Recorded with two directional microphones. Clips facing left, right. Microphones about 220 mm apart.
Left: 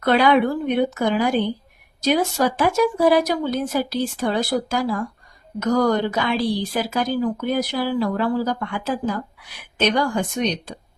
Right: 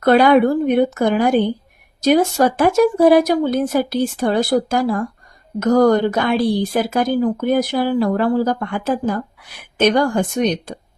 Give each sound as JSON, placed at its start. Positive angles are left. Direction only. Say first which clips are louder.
{"t": 0.0, "sound": "a woman's voice", "louder": "right 5 dB", "side_deg": -45}